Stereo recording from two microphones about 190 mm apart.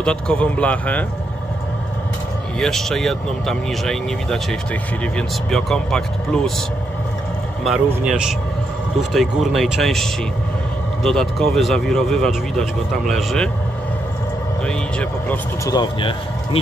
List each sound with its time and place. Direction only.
0.0 s speech: 5° left (ahead or behind)
2.6 s speech: centre (ahead or behind)
7.6 s speech: 5° right (ahead or behind)
14.7 s speech: 5° left (ahead or behind)
15.6 s speech: 20° left (ahead or behind)